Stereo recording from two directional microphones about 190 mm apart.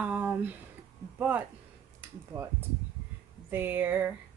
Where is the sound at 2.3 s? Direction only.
20° right (ahead or behind).